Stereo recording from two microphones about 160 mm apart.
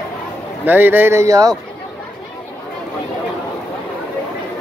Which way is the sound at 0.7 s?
10° right (ahead or behind).